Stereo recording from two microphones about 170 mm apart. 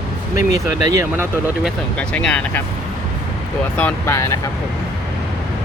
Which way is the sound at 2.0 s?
5° left (ahead or behind).